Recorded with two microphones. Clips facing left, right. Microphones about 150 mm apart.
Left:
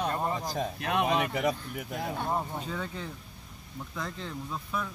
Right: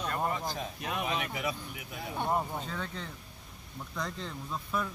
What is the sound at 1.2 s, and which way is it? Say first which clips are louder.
Speech: left 6 dB; 45° left (ahead or behind).